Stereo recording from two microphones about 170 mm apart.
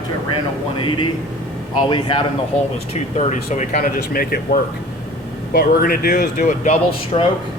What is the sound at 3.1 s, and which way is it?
Speech, 45° left (ahead or behind).